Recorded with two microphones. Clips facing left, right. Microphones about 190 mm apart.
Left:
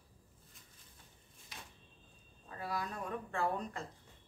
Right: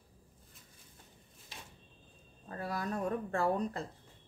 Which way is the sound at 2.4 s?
45° right (ahead or behind).